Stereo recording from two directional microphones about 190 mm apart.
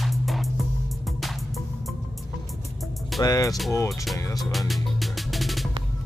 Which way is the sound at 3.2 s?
20° left (ahead or behind).